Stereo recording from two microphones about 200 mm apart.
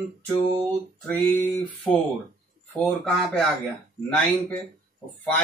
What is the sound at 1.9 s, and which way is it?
Speech, centre (ahead or behind).